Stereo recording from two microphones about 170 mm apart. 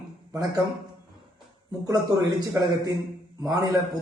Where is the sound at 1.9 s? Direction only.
20° right (ahead or behind).